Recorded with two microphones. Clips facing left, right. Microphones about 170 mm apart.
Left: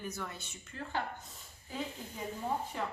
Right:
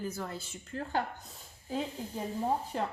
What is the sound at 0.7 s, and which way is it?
Speech, 40° right (ahead or behind).